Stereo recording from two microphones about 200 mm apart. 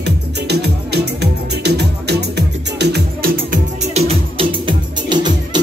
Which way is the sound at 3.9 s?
30° right (ahead or behind).